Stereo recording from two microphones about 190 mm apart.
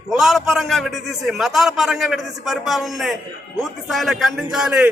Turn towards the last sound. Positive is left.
turn(degrees=-5)  # may be behind; listen again after turning